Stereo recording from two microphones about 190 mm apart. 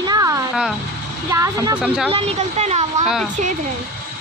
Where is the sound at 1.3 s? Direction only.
15° right (ahead or behind).